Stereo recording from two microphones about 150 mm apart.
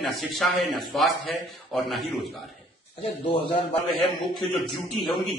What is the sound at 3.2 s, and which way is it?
Speech, 35° left (ahead or behind).